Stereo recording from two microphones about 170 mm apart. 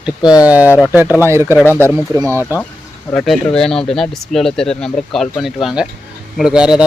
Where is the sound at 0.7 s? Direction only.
10° left (ahead or behind).